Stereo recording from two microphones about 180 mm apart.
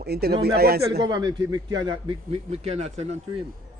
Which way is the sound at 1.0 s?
25° right (ahead or behind).